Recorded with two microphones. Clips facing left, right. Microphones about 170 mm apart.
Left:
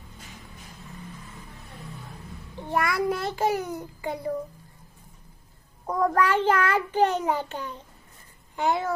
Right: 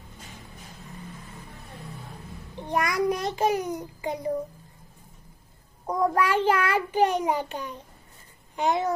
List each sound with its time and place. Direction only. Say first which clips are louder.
2.5 s a child's voice: even; 20° right (ahead or behind)
5.9 s a child's voice: left 1 dB; 10° right (ahead or behind)